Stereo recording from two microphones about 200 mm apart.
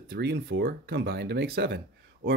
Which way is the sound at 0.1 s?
55° right (ahead or behind).